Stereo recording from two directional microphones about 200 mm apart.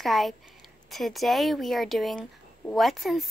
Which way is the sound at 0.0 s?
Centre (ahead or behind).